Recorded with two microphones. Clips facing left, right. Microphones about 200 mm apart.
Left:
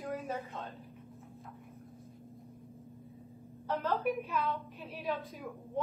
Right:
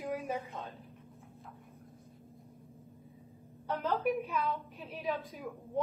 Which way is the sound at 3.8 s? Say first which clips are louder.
Right 2 dB; centre (ahead or behind).